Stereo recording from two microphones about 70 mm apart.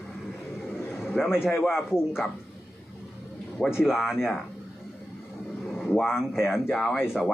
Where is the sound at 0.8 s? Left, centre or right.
Left.